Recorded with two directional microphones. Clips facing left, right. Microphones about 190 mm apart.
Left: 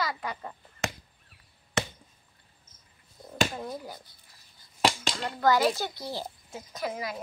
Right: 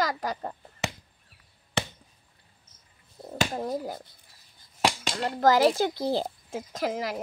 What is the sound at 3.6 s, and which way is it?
Speech, 40° right (ahead or behind).